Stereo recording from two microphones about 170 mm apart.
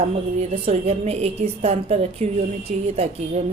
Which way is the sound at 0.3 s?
35° right (ahead or behind).